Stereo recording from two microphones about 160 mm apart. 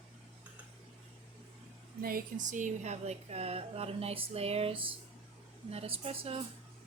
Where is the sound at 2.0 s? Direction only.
60° right (ahead or behind); by 6.4 s 35° right (ahead or behind).